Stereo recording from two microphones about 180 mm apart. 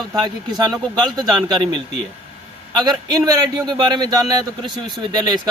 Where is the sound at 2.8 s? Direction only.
25° right (ahead or behind).